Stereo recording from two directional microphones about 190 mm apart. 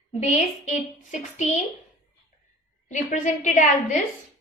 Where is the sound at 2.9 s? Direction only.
40° left (ahead or behind).